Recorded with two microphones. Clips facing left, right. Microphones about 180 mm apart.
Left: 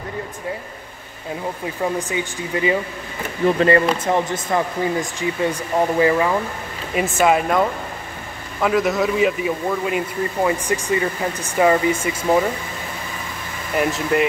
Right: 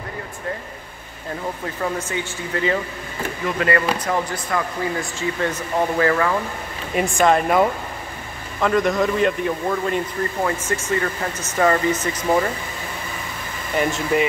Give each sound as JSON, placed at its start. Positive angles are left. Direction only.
{"t": 1.8, "sound": "a man's voice", "side_deg": 15}
{"t": 3.4, "sound": "a man's voice", "side_deg": 30}
{"t": 7.0, "sound": "speech", "side_deg": 5}
{"t": 8.5, "sound": "a man's voice", "side_deg": 5}
{"t": 13.7, "sound": "speech", "side_deg": 0}